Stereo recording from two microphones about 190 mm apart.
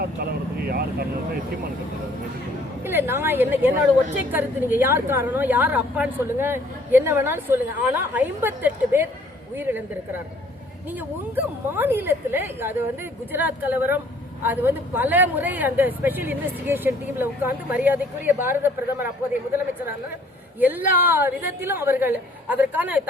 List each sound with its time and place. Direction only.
0.0 s vehicle: 55° right (ahead or behind)
2.8 s a woman's voice: 10° right (ahead or behind)
10.8 s a woman's voice: 10° right (ahead or behind)
20.6 s a woman's voice: 10° right (ahead or behind)